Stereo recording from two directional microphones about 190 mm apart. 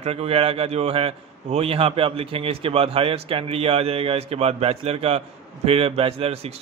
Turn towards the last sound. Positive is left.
turn(degrees=-30)  # may be behind; listen again after turning